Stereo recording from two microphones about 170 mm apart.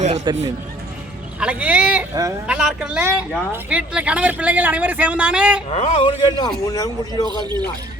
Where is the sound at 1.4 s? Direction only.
5° right (ahead or behind).